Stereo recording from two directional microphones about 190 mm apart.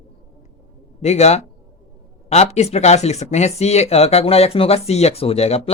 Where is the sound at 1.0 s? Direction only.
35° left (ahead or behind).